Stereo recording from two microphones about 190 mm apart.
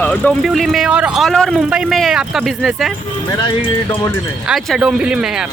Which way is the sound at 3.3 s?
20° left (ahead or behind).